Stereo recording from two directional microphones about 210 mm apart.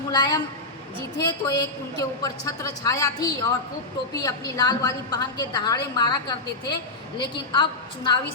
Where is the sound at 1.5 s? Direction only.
20° left (ahead or behind).